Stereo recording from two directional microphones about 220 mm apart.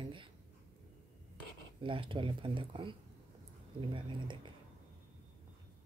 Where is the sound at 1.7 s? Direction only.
25° right (ahead or behind).